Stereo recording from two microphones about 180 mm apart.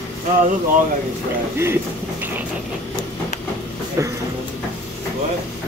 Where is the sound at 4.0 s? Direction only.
15° right (ahead or behind).